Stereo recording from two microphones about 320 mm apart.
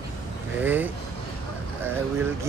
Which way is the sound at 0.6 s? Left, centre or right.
Centre.